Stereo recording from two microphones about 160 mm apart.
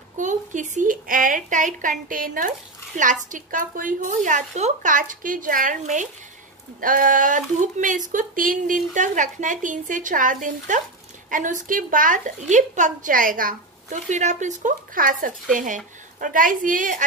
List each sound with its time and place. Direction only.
0.2 s a woman's voice: 50° right (ahead or behind)